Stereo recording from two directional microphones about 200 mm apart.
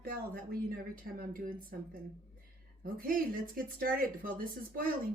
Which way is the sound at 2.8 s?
45° right (ahead or behind).